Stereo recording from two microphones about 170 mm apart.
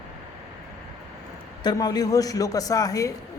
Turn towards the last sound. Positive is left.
turn(degrees=20)  # may be behind; listen again after turning